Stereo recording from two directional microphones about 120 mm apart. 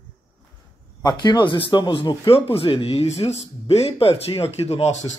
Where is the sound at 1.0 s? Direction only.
35° left (ahead or behind).